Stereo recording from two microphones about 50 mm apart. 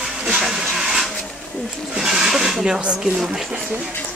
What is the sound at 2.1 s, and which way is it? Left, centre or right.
Speech, centre.